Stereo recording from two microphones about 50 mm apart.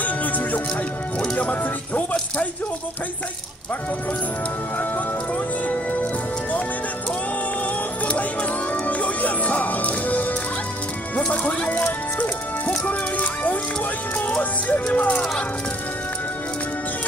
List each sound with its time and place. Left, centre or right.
0.0 s music: left
5.7 s music: left
8.1 s music: left
14.2 s speech: left